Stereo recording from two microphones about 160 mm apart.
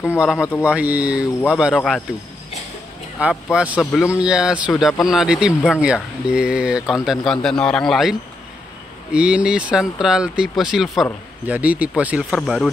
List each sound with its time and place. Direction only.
0.4 s speech: 15° left (ahead or behind)
0.7 s a man's voice: 10° right (ahead or behind)
1.8 s speech: 10° left (ahead or behind)
3.2 s a man's voice: 10° right (ahead or behind)